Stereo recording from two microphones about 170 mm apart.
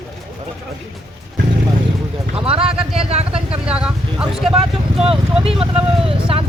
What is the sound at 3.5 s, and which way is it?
Vehicle, 5° right (ahead or behind).